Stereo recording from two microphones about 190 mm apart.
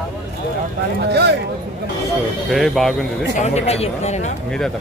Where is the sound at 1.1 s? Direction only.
60° right (ahead or behind).